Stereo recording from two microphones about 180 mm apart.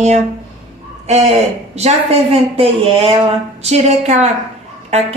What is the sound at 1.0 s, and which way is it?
A woman's voice, 40° right (ahead or behind).